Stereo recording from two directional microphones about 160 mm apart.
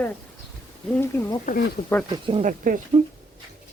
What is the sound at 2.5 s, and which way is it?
Speech, 55° right (ahead or behind).